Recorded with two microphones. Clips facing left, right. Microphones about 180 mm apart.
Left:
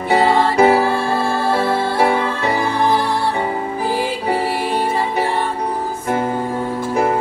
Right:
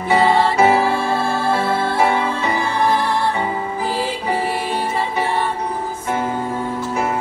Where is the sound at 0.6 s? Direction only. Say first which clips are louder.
Left 4 dB; 35° left (ahead or behind).